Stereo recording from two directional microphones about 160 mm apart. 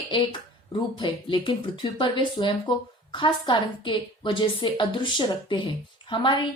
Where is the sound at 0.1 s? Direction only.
30° left (ahead or behind).